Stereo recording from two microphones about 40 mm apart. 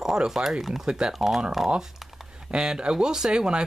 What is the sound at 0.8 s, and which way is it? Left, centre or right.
Speech, centre.